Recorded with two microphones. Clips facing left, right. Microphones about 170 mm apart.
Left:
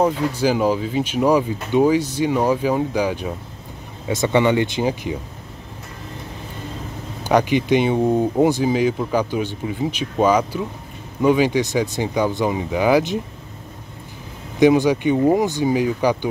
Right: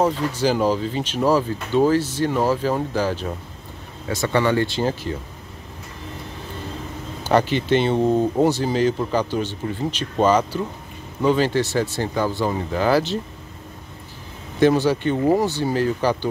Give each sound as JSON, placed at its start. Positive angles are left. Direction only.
{"t": 0.0, "sound": "speech", "side_deg": 10}
{"t": 7.2, "sound": "speech", "side_deg": 15}
{"t": 14.6, "sound": "speech", "side_deg": 15}